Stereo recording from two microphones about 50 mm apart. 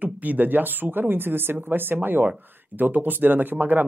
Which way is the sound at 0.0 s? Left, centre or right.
Right.